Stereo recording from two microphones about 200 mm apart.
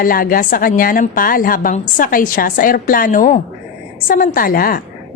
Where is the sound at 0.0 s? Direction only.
45° left (ahead or behind).